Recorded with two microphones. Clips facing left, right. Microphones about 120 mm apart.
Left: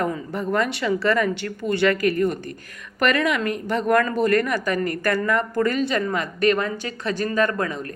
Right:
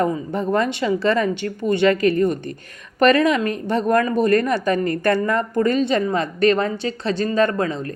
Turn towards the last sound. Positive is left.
turn(degrees=-25)  # may be behind; listen again after turning